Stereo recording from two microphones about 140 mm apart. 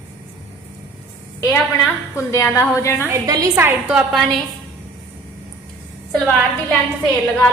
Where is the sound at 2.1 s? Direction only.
20° left (ahead or behind).